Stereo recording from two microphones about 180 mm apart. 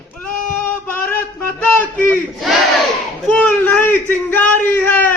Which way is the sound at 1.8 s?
10° left (ahead or behind).